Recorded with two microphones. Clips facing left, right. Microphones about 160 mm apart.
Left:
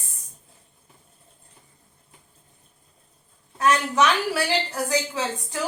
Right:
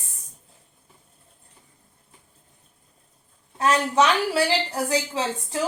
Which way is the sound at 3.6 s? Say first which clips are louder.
Right 1 dB; 30° right (ahead or behind).